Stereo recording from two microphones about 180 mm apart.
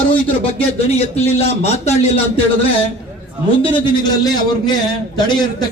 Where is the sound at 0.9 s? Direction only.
35° left (ahead or behind).